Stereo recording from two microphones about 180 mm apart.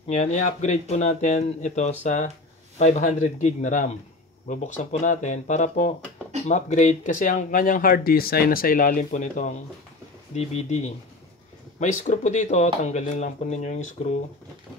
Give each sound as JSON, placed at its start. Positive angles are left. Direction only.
{"t": 0.0, "sound": "speech", "side_deg": 40}